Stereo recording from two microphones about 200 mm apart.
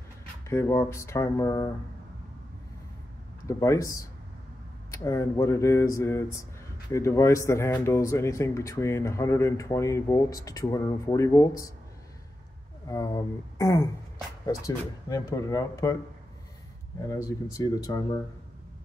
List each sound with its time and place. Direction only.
0.5 s speech: 15° left (ahead or behind)
3.4 s speech: 15° left (ahead or behind)
12.8 s speech: 15° left (ahead or behind)
15.0 s speech: 15° left (ahead or behind)
17.1 s speech: 15° left (ahead or behind)